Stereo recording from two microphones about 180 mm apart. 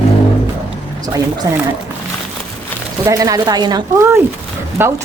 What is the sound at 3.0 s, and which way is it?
Speech, 20° right (ahead or behind).